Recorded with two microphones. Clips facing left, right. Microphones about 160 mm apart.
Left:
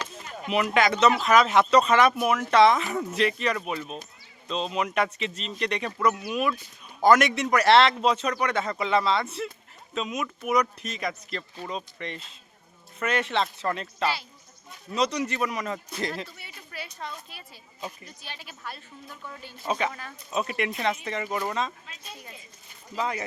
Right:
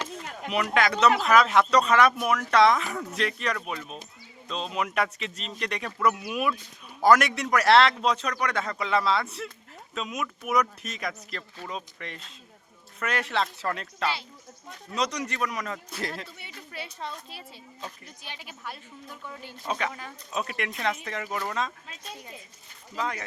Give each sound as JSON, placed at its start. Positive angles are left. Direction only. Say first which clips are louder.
{"t": 0.4, "sound": "speech", "louder": "left 2 dB", "side_deg": 5}
{"t": 16.7, "sound": "a child's voice", "louder": "even", "side_deg": -25}
{"t": 17.7, "sound": "speech", "louder": "left 4 dB", "side_deg": 10}
{"t": 18.2, "sound": "a woman's voice", "louder": "even", "side_deg": -15}
{"t": 19.5, "sound": "speech", "louder": "left 3 dB", "side_deg": 5}
{"t": 19.9, "sound": "a woman's voice", "louder": "even", "side_deg": -10}
{"t": 20.3, "sound": "speech", "louder": "left 4 dB", "side_deg": 5}